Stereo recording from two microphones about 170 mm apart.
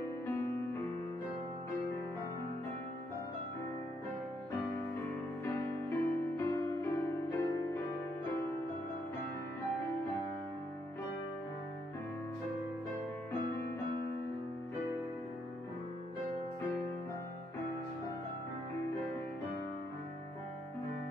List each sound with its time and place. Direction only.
5.4 s music: 15° left (ahead or behind)